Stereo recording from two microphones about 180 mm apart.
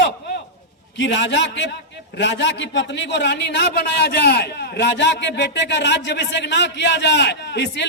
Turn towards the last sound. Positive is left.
turn(degrees=70)  # may be behind; listen again after turning